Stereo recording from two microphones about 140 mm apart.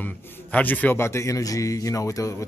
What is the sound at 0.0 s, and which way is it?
A man's voice, 10° left (ahead or behind).